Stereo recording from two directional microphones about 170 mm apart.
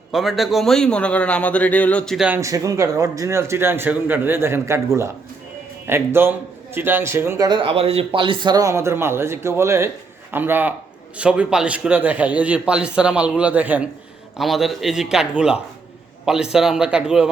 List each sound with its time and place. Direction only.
0.1 s a man's voice: centre (ahead or behind)
2.4 s a man's voice: 20° right (ahead or behind)